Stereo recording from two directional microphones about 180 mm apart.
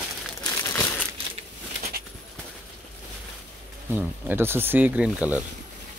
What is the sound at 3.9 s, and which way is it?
Speech, 10° right (ahead or behind).